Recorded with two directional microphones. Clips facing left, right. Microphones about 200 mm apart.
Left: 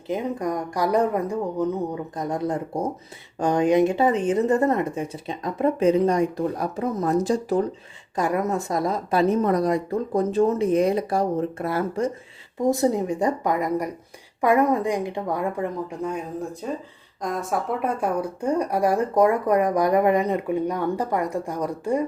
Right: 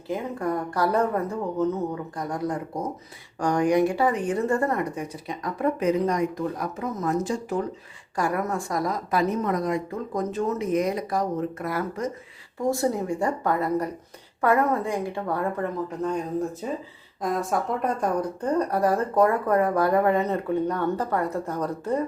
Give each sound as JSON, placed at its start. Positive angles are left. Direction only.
{"t": 0.1, "sound": "a woman's voice", "side_deg": 15}
{"t": 8.1, "sound": "a woman's voice", "side_deg": 20}
{"t": 12.5, "sound": "a woman's voice", "side_deg": 20}